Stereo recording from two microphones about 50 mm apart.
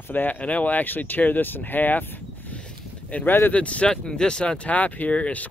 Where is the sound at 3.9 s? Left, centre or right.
Centre.